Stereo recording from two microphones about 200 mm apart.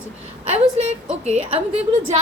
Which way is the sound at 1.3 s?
30° right (ahead or behind).